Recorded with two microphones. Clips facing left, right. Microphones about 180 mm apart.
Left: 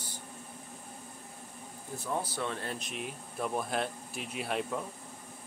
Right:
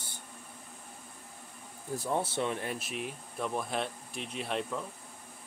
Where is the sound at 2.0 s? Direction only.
30° right (ahead or behind).